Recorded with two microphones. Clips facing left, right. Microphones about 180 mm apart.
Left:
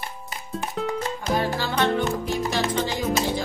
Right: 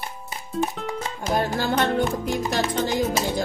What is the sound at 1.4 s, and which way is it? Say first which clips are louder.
Music: right 2 dB; 50° right (ahead or behind).